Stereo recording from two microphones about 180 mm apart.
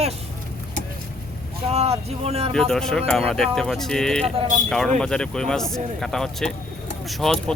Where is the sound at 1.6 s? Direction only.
35° right (ahead or behind).